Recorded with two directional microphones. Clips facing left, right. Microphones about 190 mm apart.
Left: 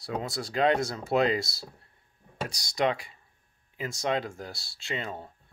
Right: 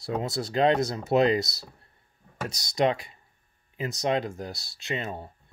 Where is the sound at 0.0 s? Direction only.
25° right (ahead or behind).